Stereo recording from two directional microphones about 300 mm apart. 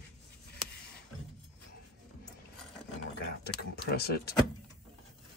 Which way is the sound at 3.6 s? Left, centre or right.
Left.